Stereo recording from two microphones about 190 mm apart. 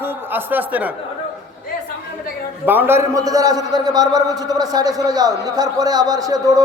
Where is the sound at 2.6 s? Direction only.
10° right (ahead or behind).